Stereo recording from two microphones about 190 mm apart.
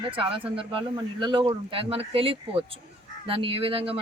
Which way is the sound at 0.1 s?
25° right (ahead or behind).